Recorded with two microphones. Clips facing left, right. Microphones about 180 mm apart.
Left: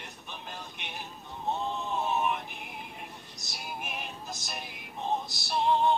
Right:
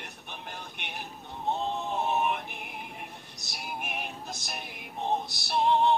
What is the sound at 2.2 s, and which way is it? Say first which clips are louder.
Music: right 1 dB; 60° right (ahead or behind).